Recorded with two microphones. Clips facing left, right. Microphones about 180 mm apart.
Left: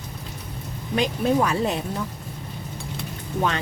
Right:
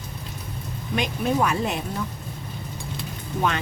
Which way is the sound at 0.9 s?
35° left (ahead or behind).